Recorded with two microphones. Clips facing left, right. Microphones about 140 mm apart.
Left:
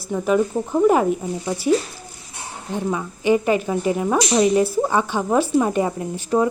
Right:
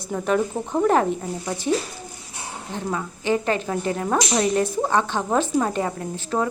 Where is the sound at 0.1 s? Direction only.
5° left (ahead or behind).